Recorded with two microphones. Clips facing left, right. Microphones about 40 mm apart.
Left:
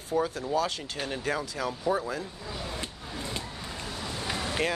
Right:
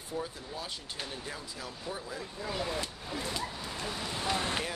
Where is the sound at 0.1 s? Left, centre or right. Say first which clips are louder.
Left 10 dB; left.